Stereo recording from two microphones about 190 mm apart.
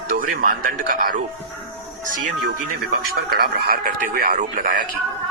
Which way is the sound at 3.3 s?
55° right (ahead or behind).